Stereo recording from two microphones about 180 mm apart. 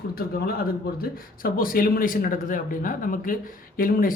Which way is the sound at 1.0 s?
50° left (ahead or behind).